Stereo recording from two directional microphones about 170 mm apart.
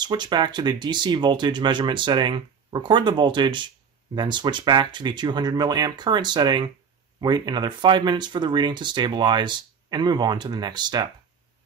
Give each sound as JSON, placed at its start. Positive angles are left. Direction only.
{"t": 0.0, "sound": "speech", "side_deg": -25}